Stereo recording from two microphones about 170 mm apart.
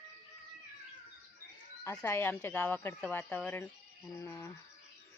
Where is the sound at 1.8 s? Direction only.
15° left (ahead or behind).